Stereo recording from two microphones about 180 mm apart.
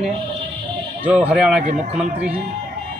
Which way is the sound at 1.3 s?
5° right (ahead or behind).